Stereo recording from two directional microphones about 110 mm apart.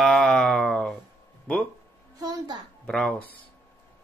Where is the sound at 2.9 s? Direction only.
5° left (ahead or behind).